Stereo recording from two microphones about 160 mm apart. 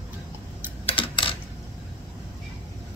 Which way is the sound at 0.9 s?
35° left (ahead or behind).